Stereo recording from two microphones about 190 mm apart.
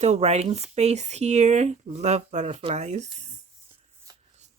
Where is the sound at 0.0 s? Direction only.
35° right (ahead or behind).